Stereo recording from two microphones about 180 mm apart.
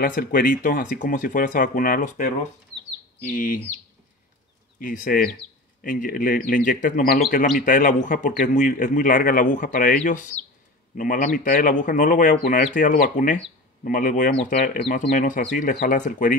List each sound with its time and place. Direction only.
0.0 s a man's voice: 50° left (ahead or behind)
4.7 s a man's voice: 50° left (ahead or behind)
11.0 s a man's voice: 50° left (ahead or behind)